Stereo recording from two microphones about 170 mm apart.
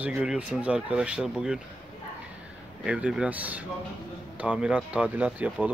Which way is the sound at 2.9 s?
5° right (ahead or behind).